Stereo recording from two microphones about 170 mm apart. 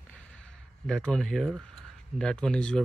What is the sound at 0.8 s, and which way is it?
Speech, 5° left (ahead or behind).